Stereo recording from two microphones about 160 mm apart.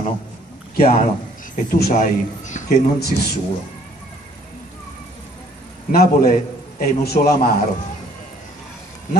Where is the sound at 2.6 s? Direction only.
55° left (ahead or behind).